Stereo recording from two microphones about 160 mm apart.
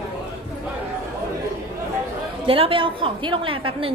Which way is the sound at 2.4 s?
35° right (ahead or behind).